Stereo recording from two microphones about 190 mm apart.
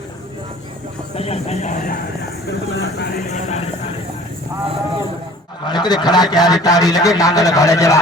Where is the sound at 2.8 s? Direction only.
65° left (ahead or behind).